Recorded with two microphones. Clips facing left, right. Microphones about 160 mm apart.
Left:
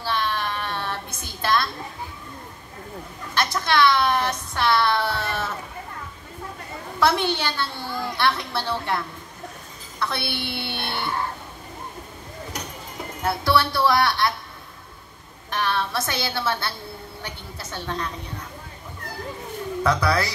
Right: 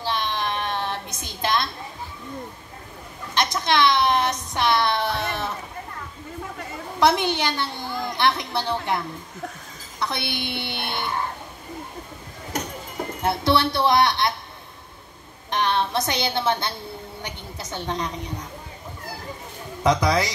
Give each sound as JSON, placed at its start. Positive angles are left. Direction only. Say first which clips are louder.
{"t": 0.0, "sound": "child singing", "louder": "even", "side_deg": -15}
{"t": 3.3, "sound": "a sound", "louder": "even", "side_deg": -15}
{"t": 7.0, "sound": "a woman's voice", "louder": "right 1 dB", "side_deg": -15}
{"t": 13.2, "sound": "a woman's voice", "louder": "right 1 dB", "side_deg": -20}
{"t": 15.5, "sound": "a woman's voice", "louder": "right 2 dB", "side_deg": -20}
{"t": 19.8, "sound": "a woman's voice", "louder": "right 2 dB", "side_deg": -15}